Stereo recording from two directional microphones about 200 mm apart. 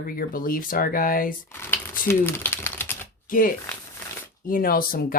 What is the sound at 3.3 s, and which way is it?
Speech, 45° left (ahead or behind).